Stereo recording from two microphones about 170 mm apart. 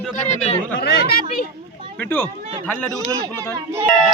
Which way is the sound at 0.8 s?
70° left (ahead or behind).